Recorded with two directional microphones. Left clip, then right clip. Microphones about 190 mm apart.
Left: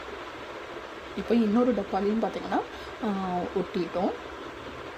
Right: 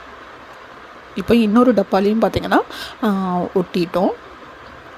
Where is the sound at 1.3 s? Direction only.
40° right (ahead or behind).